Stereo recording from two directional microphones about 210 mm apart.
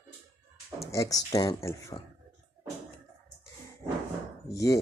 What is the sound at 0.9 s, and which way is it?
Speech, 15° left (ahead or behind).